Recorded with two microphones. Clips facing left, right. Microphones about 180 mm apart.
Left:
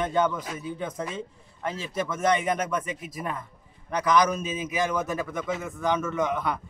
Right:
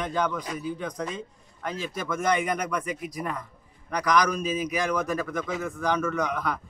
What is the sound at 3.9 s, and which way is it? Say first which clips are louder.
Speech: left 1 dB; 25° left (ahead or behind).